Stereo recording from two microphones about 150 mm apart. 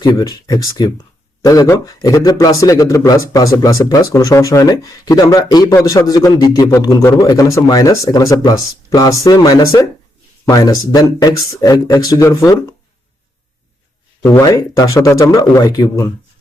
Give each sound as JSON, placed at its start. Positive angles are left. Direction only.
{"t": 0.0, "sound": "a man's voice", "side_deg": 25}
{"t": 14.3, "sound": "a man's voice", "side_deg": 20}